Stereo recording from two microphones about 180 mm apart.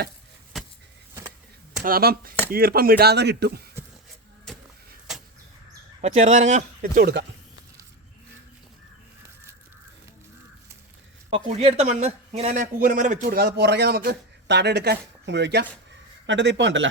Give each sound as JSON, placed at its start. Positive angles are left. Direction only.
{"t": 0.5, "sound": "vehicle", "side_deg": 0}
{"t": 1.8, "sound": "a man's voice", "side_deg": -55}
{"t": 4.5, "sound": "a sound", "side_deg": 5}
{"t": 6.0, "sound": "speech", "side_deg": -35}
{"t": 7.0, "sound": "speech", "side_deg": -70}
{"t": 11.3, "sound": "a man's voice", "side_deg": -35}
{"t": 16.2, "sound": "speech", "side_deg": -85}